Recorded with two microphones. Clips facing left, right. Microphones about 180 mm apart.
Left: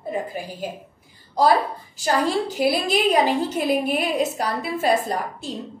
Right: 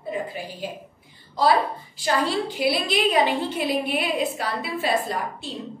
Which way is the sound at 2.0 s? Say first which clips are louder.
Left 2 dB; 45° left (ahead or behind).